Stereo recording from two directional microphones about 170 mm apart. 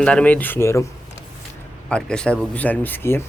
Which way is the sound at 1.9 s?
5° left (ahead or behind).